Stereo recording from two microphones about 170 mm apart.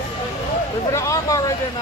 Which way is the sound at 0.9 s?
20° left (ahead or behind).